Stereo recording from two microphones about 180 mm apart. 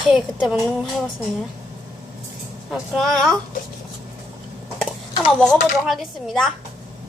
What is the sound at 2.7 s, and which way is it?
Speech, centre (ahead or behind).